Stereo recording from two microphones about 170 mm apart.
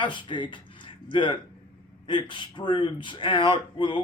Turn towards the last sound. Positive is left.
turn(degrees=30)  # may be behind; listen again after turning